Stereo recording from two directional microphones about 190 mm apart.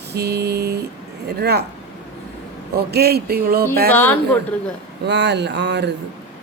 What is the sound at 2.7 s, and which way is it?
Speech, 55° right (ahead or behind).